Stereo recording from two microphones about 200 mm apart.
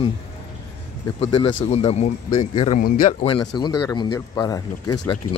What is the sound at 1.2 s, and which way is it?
Speech, 25° left (ahead or behind).